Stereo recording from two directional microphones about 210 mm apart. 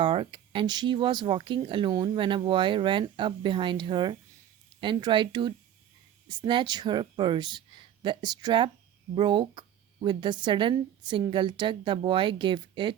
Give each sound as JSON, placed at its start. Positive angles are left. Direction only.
{"t": 0.0, "sound": "speech", "side_deg": -25}